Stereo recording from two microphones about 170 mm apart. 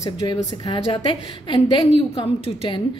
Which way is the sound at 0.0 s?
20° left (ahead or behind).